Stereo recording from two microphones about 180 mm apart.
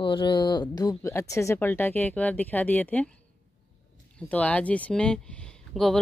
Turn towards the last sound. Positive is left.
turn(degrees=0)  # may be behind; listen again after turning